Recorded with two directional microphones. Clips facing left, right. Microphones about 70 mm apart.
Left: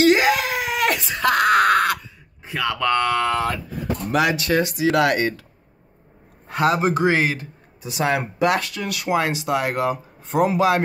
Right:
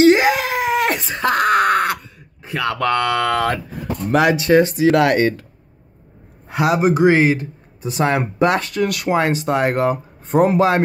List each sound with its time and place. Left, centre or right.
0.0 s screaming: right
2.4 s speech: right
4.1 s speech: right
4.4 s speech: right
6.5 s speech: centre; by 8.8 s right
8.8 s speech: right
9.1 s speech: right